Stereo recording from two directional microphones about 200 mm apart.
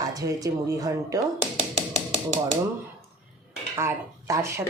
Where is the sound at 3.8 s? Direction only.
15° right (ahead or behind).